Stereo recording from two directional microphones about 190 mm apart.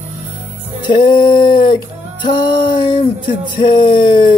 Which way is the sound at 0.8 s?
25° left (ahead or behind).